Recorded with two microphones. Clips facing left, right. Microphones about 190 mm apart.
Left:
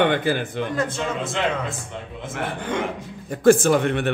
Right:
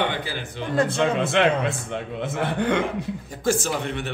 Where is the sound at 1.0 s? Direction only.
65° right (ahead or behind).